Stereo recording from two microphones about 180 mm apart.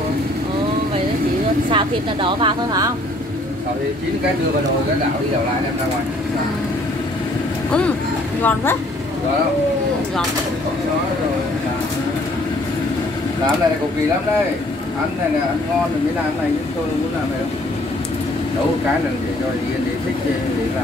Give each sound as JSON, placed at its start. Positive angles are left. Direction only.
{"t": 1.7, "sound": "speech", "side_deg": -30}
{"t": 8.4, "sound": "speech", "side_deg": 10}